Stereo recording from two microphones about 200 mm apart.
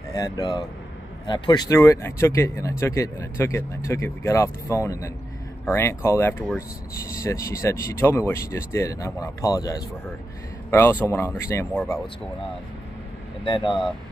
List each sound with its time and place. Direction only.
0.1 s a man's voice: 20° left (ahead or behind)
13.5 s speech: 25° left (ahead or behind)